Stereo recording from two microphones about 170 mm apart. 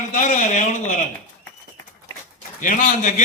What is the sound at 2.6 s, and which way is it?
Speech, 50° left (ahead or behind).